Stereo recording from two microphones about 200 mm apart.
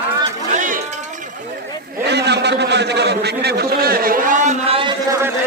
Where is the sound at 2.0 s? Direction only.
55° right (ahead or behind); by 5.2 s 25° right (ahead or behind).